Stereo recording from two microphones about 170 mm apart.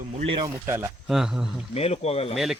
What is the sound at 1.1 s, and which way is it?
Speech, 5° right (ahead or behind).